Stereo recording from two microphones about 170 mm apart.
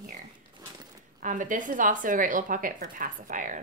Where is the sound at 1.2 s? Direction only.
50° right (ahead or behind).